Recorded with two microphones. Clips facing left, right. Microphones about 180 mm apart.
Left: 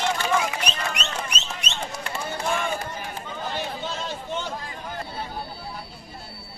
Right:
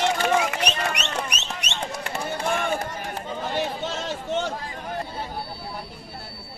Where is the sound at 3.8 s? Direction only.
80° right.